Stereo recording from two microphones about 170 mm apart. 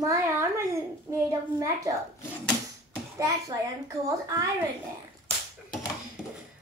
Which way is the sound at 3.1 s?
20° right (ahead or behind).